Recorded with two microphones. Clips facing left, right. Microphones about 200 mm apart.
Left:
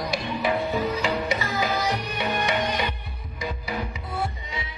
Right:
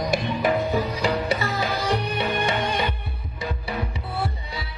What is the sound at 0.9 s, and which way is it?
Music, 35° right (ahead or behind).